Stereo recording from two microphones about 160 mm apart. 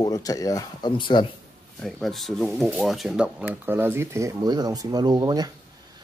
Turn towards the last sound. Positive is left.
turn(degrees=-25)  # may be behind; listen again after turning